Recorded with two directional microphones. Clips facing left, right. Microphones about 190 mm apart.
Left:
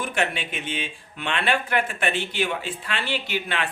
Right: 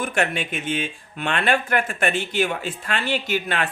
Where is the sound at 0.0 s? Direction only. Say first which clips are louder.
Right 3 dB; 50° right (ahead or behind).